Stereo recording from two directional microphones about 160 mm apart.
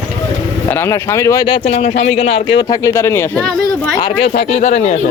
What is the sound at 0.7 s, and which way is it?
Speech, 15° left (ahead or behind).